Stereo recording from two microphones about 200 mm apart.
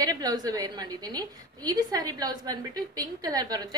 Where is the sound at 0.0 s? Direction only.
20° right (ahead or behind).